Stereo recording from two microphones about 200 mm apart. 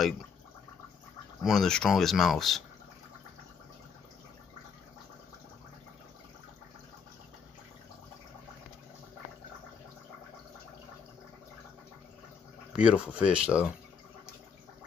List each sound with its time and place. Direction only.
1.4 s speech: centre (ahead or behind)
12.7 s speech: 5° right (ahead or behind)